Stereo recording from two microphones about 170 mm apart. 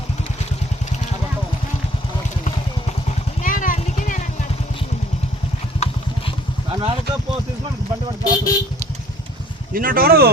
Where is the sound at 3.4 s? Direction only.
50° left (ahead or behind).